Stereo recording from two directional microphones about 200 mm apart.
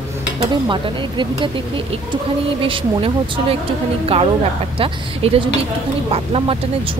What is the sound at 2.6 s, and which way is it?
Speech, 25° right (ahead or behind).